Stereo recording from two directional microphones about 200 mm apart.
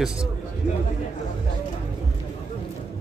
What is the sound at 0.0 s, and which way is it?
Speech, 5° right (ahead or behind).